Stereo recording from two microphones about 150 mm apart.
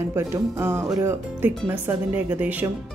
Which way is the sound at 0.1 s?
15° right (ahead or behind).